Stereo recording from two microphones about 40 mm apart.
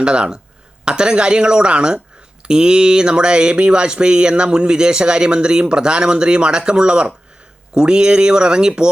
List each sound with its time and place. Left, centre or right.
0.0 s speech: right